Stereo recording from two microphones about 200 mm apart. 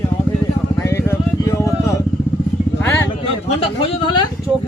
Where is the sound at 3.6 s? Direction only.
25° left (ahead or behind).